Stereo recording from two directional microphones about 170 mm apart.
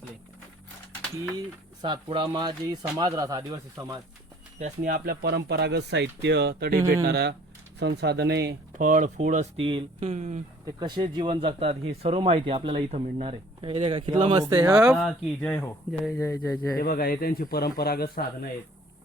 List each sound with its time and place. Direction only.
1.8 s speech: 30° right (ahead or behind)
4.6 s speech: 50° right (ahead or behind)
7.1 s speech: 75° right (ahead or behind)
8.8 s speech: 50° right (ahead or behind)
10.7 s speech: 25° right (ahead or behind)
14.5 s speech: 15° right (ahead or behind)
14.9 s speech: 5° left (ahead or behind)
16.1 s speech: 15° left (ahead or behind)
16.7 s speech: 60° left (ahead or behind)